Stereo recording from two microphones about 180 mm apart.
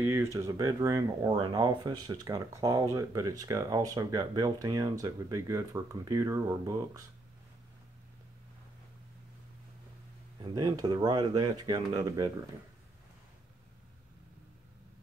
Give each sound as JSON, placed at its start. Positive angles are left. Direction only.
{"t": 0.0, "sound": "speech", "side_deg": -15}
{"t": 10.4, "sound": "speech", "side_deg": -25}